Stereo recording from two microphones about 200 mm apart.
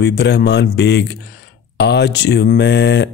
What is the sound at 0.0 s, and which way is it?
Speech, 55° left (ahead or behind).